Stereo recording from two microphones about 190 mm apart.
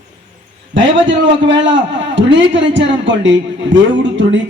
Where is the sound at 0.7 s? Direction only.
75° right (ahead or behind).